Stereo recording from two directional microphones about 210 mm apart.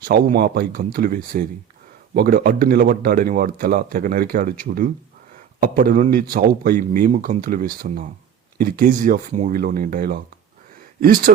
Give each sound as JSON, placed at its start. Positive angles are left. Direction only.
{"t": 0.0, "sound": "speech", "side_deg": -45}